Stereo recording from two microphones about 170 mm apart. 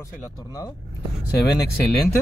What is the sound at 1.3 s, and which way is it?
Speech, 70° left (ahead or behind).